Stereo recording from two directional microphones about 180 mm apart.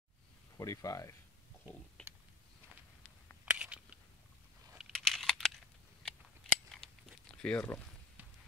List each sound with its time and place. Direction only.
0.6 s speech: 20° left (ahead or behind)
2.0 s a sound: 10° left (ahead or behind)
3.4 s a sound: 5° right (ahead or behind)
4.7 s computer keyboard: centre (ahead or behind)
6.0 s scissors: 5° left (ahead or behind)
7.4 s speech: 10° left (ahead or behind)